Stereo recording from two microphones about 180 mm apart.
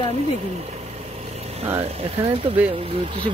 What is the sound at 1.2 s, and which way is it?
Vehicle, 35° right (ahead or behind).